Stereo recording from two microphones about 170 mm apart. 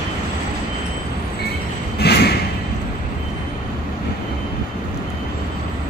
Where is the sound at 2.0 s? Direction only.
70° left (ahead or behind).